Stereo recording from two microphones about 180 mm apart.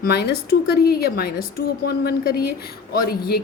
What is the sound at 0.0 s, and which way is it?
A woman's voice, 60° left (ahead or behind).